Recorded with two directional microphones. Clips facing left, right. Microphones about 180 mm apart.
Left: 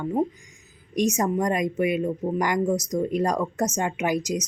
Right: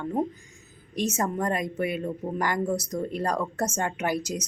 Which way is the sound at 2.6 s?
10° right (ahead or behind).